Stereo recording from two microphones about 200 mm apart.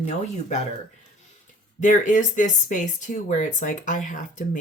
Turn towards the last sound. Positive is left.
turn(degrees=40)  # may be behind; listen again after turning